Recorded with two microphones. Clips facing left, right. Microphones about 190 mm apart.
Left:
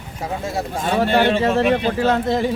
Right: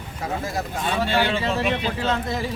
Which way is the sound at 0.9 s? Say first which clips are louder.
Left 7 dB; 55° left (ahead or behind).